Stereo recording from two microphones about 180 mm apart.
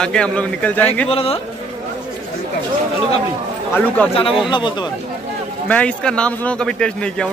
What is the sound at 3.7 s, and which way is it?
Speech, 5° left (ahead or behind).